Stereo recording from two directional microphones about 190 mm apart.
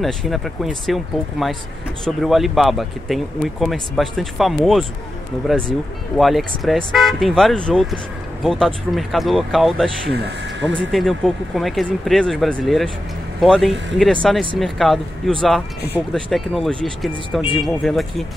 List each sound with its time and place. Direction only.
0.0 s speech: centre (ahead or behind)
10.1 s speech: 65° right (ahead or behind)
10.9 s speech: centre (ahead or behind)